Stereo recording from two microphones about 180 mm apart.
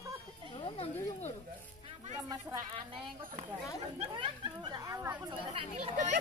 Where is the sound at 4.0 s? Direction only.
25° right (ahead or behind).